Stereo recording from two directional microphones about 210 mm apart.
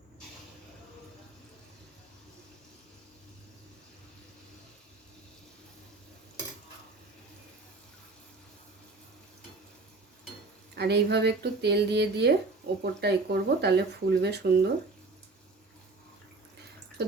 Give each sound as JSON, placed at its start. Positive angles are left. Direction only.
{"t": 10.8, "sound": "speech", "side_deg": -50}
{"t": 17.0, "sound": "speech", "side_deg": -50}